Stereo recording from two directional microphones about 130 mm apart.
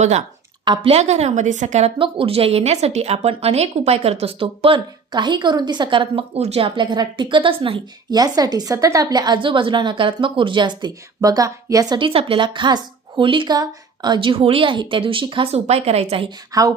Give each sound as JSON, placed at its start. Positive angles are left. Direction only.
{"t": 0.0, "sound": "speech", "side_deg": -60}
{"t": 0.6, "sound": "speech", "side_deg": -35}
{"t": 0.9, "sound": "speech", "side_deg": -55}
{"t": 2.0, "sound": "speech", "side_deg": -45}
{"t": 6.7, "sound": "a woman's voice", "side_deg": -35}
{"t": 8.1, "sound": "a woman's voice", "side_deg": -30}
{"t": 11.9, "sound": "a woman's voice", "side_deg": -45}
{"t": 15.5, "sound": "speech", "side_deg": -55}
{"t": 16.5, "sound": "speech", "side_deg": -25}